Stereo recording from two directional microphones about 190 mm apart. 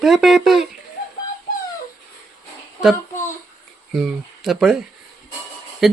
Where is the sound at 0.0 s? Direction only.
Centre (ahead or behind).